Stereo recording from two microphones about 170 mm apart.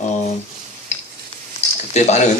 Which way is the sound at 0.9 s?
40° left (ahead or behind).